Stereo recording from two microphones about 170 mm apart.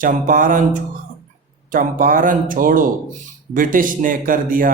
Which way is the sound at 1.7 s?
55° right (ahead or behind).